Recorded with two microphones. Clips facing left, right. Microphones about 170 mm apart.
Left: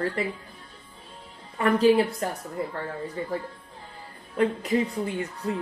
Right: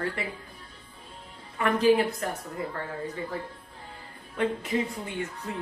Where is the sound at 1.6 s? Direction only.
35° left (ahead or behind).